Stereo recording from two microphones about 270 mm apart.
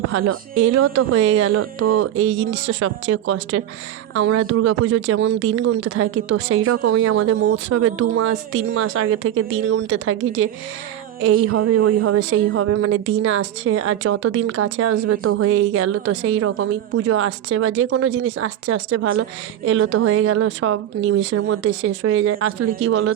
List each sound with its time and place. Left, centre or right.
0.1 s a woman's voice: right
7.1 s speech: right
7.5 s a woman's voice: right